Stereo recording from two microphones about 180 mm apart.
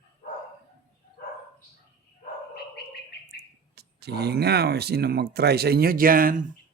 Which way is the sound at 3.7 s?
65° right (ahead or behind).